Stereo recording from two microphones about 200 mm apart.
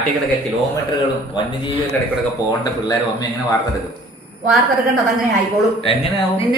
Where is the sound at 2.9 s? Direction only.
20° left (ahead or behind).